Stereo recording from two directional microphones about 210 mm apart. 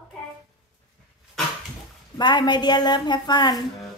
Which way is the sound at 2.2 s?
20° left (ahead or behind).